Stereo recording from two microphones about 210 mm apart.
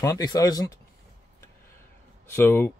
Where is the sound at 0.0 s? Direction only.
15° left (ahead or behind).